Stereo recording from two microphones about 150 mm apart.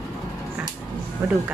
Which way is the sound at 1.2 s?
15° right (ahead or behind).